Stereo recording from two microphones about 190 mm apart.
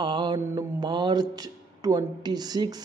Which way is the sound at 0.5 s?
20° right (ahead or behind).